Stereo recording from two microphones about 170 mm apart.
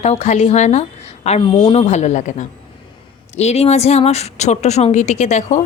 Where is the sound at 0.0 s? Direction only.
40° left (ahead or behind).